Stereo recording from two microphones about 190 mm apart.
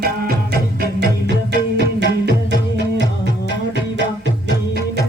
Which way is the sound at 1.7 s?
60° right (ahead or behind).